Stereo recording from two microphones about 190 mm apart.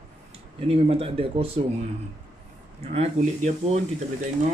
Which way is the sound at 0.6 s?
30° right (ahead or behind).